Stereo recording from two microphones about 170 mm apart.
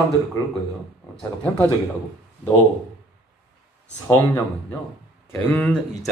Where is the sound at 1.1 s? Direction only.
10° left (ahead or behind).